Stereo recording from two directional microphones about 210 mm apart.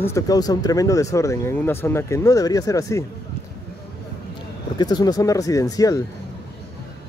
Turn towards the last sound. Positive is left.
turn(degrees=15)  # may be behind; listen again after turning